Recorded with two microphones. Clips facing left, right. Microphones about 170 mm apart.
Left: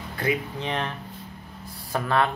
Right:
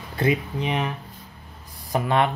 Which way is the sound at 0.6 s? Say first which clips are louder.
Right 3 dB; 10° right (ahead or behind).